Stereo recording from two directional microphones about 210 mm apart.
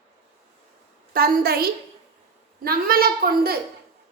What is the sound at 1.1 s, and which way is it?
A woman's voice, 45° right (ahead or behind).